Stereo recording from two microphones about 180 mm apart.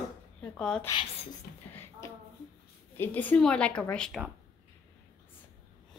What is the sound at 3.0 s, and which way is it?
A woman's voice, 10° left (ahead or behind).